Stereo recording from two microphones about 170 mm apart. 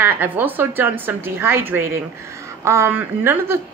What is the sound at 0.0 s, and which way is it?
A woman's voice, 10° right (ahead or behind).